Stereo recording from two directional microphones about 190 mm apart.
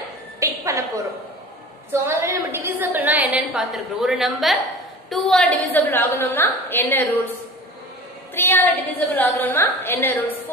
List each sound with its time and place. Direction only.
0.4 s a sound: 15° right (ahead or behind)
1.9 s a woman's voice: 15° right (ahead or behind); by 7.1 s 10° left (ahead or behind)
8.4 s a woman's voice: 10° left (ahead or behind)